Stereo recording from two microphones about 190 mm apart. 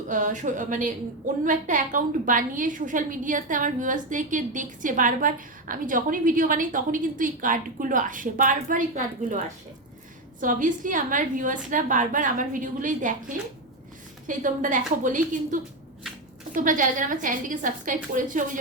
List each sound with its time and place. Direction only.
0.1 s a woman's voice: 45° right (ahead or behind)
10.4 s a woman's voice: 45° right (ahead or behind)